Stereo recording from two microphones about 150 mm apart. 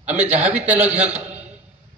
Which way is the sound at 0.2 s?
10° right (ahead or behind).